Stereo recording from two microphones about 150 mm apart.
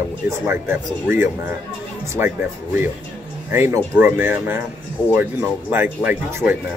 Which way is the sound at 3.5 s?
15° right (ahead or behind).